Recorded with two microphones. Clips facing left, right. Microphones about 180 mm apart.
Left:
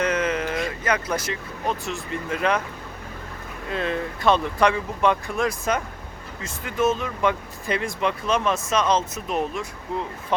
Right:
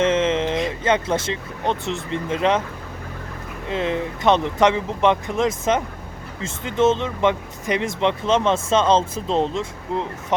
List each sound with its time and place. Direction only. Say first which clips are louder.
0.0 s speech: right 5 dB; 25° right (ahead or behind)
3.7 s speech: right 3 dB; 20° right (ahead or behind)